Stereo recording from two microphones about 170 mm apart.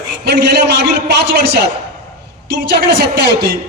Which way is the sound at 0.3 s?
75° right (ahead or behind).